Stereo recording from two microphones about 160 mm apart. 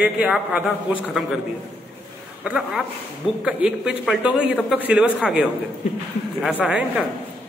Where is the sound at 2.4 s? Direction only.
5° right (ahead or behind).